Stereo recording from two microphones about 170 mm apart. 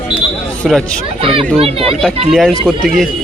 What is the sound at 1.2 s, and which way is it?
Chatter, 30° right (ahead or behind).